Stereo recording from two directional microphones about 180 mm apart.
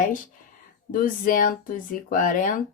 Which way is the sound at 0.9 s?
50° left (ahead or behind).